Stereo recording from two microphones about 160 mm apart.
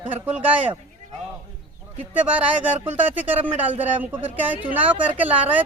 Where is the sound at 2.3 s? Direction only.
10° right (ahead or behind).